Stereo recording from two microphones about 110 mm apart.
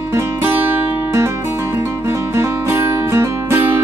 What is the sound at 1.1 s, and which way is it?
Music, 25° right (ahead or behind).